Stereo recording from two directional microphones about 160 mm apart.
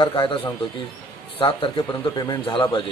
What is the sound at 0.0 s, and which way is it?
A man's voice, 30° left (ahead or behind).